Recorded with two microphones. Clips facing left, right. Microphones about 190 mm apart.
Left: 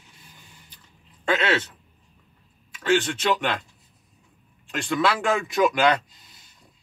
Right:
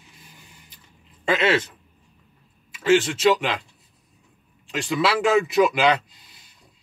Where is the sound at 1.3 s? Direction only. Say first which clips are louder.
Right 3 dB; 10° right (ahead or behind).